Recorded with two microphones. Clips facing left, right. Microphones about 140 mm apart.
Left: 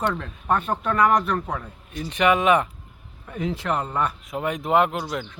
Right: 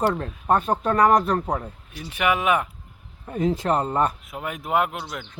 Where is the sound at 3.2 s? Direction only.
40° right (ahead or behind).